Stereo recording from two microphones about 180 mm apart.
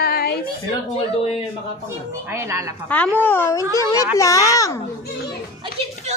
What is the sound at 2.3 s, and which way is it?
Speech, 15° right (ahead or behind).